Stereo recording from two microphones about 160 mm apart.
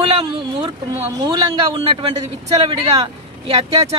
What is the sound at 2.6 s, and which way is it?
Speech, 30° right (ahead or behind).